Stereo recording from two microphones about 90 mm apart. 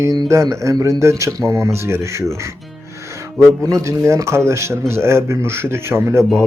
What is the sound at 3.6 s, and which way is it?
A man's voice, 35° right (ahead or behind).